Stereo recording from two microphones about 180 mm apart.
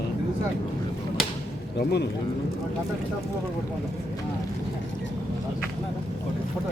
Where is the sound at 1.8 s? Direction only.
65° left (ahead or behind).